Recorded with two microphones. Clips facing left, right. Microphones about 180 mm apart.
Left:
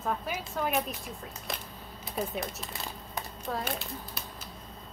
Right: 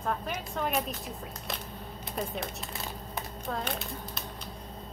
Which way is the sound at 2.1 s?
Centre (ahead or behind).